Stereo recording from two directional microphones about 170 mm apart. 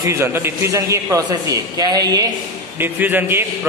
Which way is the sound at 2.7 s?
10° right (ahead or behind).